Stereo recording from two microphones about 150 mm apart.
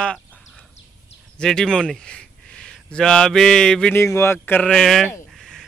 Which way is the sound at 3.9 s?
15° left (ahead or behind).